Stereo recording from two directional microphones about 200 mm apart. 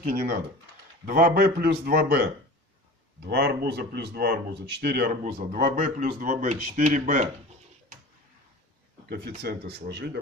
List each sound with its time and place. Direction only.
0.0 s a man's voice: 45° right (ahead or behind)
3.3 s speech: 55° right (ahead or behind)
5.2 s speech: 45° right (ahead or behind)
9.4 s speech: 55° right (ahead or behind)